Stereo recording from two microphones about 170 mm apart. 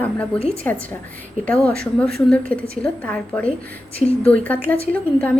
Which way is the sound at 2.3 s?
5° left (ahead or behind).